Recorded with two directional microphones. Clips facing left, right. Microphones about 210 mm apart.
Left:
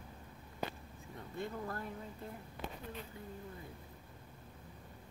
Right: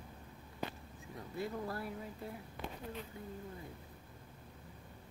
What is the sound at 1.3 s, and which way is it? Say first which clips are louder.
Speech: right 2 dB; 5° right (ahead or behind).